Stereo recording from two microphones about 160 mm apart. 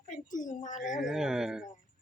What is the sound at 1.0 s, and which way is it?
Speech, 5° right (ahead or behind).